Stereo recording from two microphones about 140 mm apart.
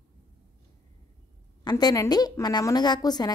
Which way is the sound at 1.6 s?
25° left (ahead or behind).